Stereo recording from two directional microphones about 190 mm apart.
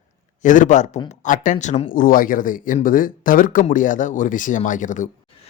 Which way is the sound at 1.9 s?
45° left (ahead or behind).